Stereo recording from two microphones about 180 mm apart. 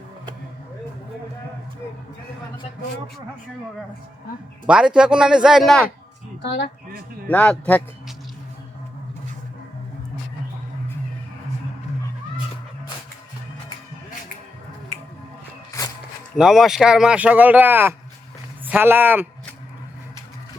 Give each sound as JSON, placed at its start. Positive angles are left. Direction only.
{"t": 4.6, "sound": "speech", "side_deg": -5}
{"t": 6.4, "sound": "speech", "side_deg": 70}
{"t": 7.3, "sound": "speech", "side_deg": 5}
{"t": 15.8, "sound": "a sound", "side_deg": 20}
{"t": 16.3, "sound": "speech", "side_deg": 0}